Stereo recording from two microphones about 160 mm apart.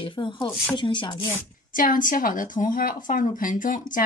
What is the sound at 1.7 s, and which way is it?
Speech, 55° left (ahead or behind).